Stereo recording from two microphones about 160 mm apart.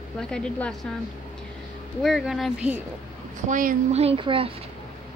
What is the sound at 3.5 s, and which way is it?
Speech, 60° right (ahead or behind).